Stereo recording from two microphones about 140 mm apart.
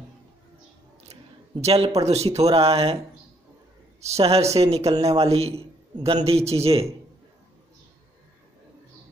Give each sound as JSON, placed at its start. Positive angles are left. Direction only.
{"t": 1.6, "sound": "a man's voice", "side_deg": -45}
{"t": 4.0, "sound": "a man's voice", "side_deg": -50}